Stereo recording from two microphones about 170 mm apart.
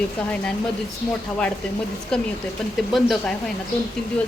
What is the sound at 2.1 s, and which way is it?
A woman's voice, 5° left (ahead or behind).